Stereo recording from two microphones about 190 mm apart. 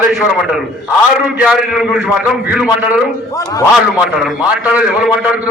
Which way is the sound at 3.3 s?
15° left (ahead or behind).